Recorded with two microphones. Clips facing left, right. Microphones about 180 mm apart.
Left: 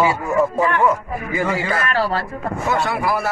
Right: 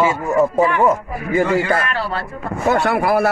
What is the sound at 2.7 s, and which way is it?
Speech, 60° right (ahead or behind).